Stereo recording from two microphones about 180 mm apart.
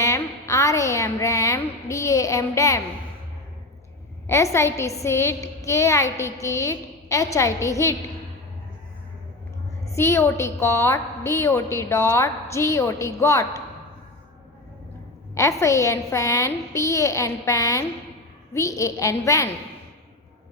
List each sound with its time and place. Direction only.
0.0 s a sound: 15° left (ahead or behind)
4.3 s a woman's voice: 15° left (ahead or behind)
9.9 s a woman's voice: 15° left (ahead or behind)
15.4 s a woman's voice: 15° left (ahead or behind)